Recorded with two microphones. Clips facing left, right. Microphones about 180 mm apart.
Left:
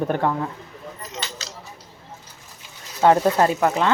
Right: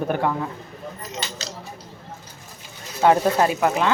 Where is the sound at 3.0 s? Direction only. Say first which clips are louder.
Left 1 dB; 10° right (ahead or behind).